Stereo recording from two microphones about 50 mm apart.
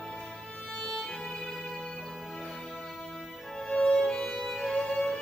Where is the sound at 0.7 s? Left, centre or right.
Centre.